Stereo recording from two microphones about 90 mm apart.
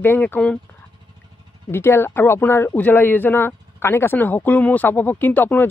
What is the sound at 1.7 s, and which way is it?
Speech, 25° left (ahead or behind).